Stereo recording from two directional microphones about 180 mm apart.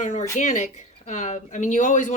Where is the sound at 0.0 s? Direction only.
40° left (ahead or behind).